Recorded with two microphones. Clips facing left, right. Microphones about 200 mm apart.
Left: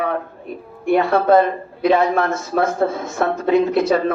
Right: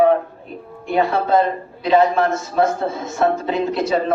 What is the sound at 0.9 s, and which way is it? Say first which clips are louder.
Speech: left 3 dB; 55° left (ahead or behind).